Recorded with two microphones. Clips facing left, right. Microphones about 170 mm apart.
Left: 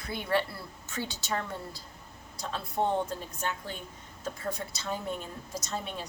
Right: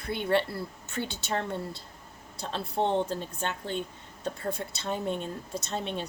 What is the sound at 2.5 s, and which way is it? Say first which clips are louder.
Music: right 1 dB; 25° right (ahead or behind).